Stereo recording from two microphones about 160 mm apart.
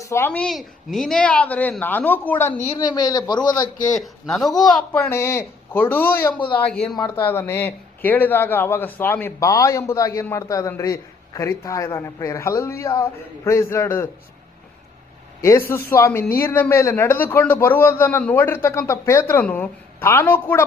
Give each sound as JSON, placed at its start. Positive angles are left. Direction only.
{"t": 0.0, "sound": "a man's voice", "side_deg": 15}
{"t": 3.9, "sound": "speech", "side_deg": 0}
{"t": 6.3, "sound": "a man's voice", "side_deg": 30}
{"t": 6.7, "sound": "speech", "side_deg": 5}
{"t": 6.9, "sound": "a man's voice", "side_deg": 25}
{"t": 7.3, "sound": "speech", "side_deg": 15}
{"t": 15.4, "sound": "a man's voice", "side_deg": 20}